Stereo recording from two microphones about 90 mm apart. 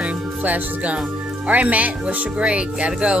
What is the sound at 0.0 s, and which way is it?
Music, 15° right (ahead or behind).